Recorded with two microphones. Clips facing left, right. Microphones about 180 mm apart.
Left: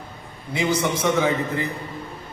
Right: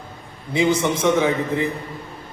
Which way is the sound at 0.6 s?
20° right (ahead or behind).